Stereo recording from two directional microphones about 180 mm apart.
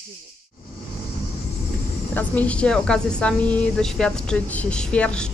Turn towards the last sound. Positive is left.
turn(degrees=5)  # may be behind; listen again after turning